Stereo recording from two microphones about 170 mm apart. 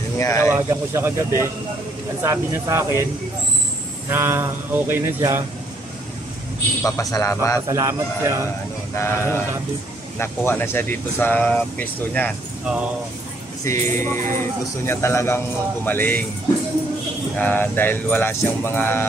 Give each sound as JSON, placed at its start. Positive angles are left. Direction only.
{"t": 0.2, "sound": "speech", "side_deg": 20}
{"t": 0.7, "sound": "speech", "side_deg": -15}
{"t": 4.1, "sound": "speech", "side_deg": -15}
{"t": 6.8, "sound": "a man's voice", "side_deg": 20}
{"t": 7.6, "sound": "speech", "side_deg": -15}
{"t": 8.9, "sound": "speech", "side_deg": 15}
{"t": 12.6, "sound": "speech", "side_deg": -5}
{"t": 13.7, "sound": "speech", "side_deg": 15}
{"t": 17.4, "sound": "speech", "side_deg": 10}